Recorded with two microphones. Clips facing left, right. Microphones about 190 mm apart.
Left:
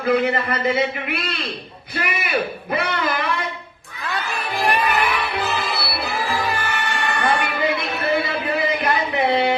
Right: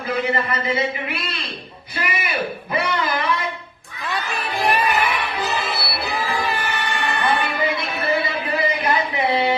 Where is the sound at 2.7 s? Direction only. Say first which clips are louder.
Right 1 dB; 60° left (ahead or behind).